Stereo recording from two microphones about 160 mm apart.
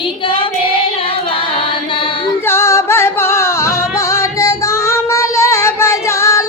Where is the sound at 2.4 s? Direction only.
15° left (ahead or behind).